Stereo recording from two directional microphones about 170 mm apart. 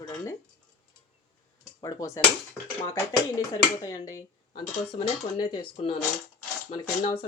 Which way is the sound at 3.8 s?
20° left (ahead or behind).